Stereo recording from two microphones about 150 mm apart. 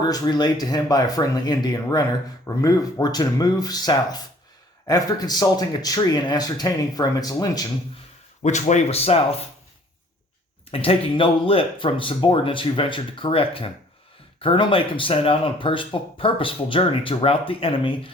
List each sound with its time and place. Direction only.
0.1 s a man's voice: 25° left (ahead or behind)
8.4 s speech: 50° left (ahead or behind)
10.7 s speech: 40° left (ahead or behind)